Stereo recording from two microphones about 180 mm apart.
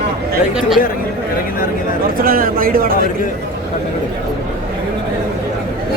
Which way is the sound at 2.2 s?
55° right (ahead or behind).